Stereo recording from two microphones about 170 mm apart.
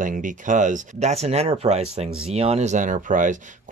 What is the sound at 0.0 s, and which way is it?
Speech, 50° right (ahead or behind).